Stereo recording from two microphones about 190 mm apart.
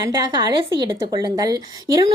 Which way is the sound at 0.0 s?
20° right (ahead or behind).